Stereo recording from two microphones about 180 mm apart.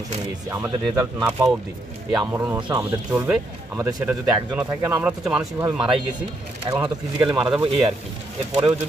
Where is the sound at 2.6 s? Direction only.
25° right (ahead or behind).